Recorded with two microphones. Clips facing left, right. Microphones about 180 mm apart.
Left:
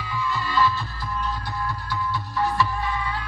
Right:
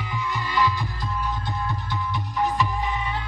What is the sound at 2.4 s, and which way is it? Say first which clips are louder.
Music: even; 20° right (ahead or behind).